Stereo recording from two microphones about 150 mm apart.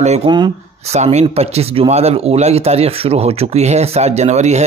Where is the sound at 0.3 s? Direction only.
35° right (ahead or behind).